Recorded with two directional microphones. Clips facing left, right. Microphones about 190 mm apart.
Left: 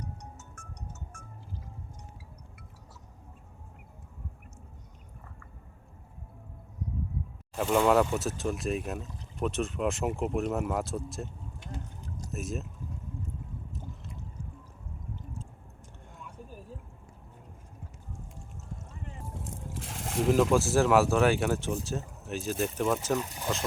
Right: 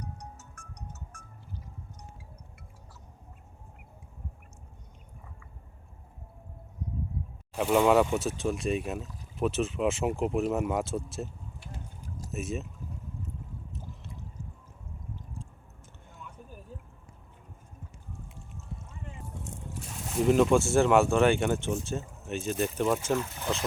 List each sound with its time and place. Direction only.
0.0 s music: 35° right (ahead or behind)
7.5 s speech: 5° right (ahead or behind)
19.5 s a sound: 90° left
20.2 s speech: centre (ahead or behind)
23.1 s speech: 15° left (ahead or behind)